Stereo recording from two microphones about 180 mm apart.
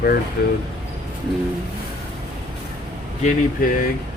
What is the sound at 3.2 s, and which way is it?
Speech, 50° left (ahead or behind).